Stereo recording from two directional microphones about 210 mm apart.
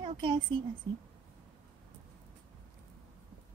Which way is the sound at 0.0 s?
25° right (ahead or behind).